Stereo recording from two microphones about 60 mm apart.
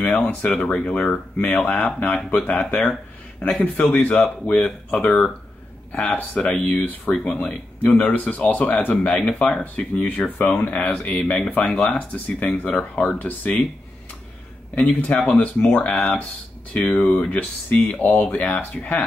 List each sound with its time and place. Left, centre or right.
0.0 s speech: left
0.5 s speech: left
1.1 s speech: left
14.8 s speech: left